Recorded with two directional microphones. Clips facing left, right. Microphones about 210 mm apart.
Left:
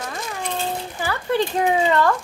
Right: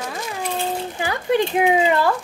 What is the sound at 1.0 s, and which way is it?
Speech, 15° right (ahead or behind).